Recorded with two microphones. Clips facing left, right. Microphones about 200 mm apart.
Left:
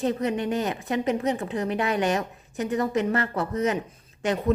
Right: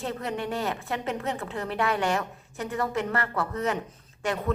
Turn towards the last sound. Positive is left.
turn(degrees=20)  # may be behind; listen again after turning